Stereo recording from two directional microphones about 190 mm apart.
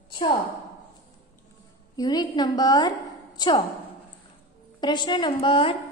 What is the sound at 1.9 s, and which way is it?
A woman's voice, 20° left (ahead or behind).